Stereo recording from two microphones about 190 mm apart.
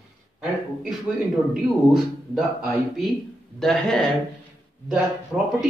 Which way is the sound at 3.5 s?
5° left (ahead or behind).